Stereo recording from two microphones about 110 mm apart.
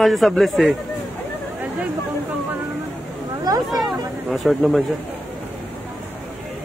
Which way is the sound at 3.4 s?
35° right (ahead or behind).